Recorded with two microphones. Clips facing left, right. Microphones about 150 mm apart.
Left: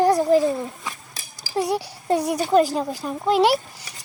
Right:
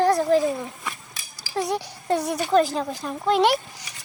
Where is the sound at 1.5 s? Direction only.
10° left (ahead or behind).